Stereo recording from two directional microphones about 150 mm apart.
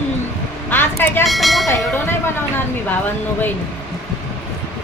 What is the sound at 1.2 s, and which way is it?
Speech, centre (ahead or behind).